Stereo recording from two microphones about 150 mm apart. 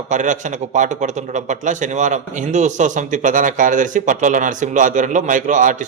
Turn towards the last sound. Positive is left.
turn(degrees=-60)  # may be behind; listen again after turning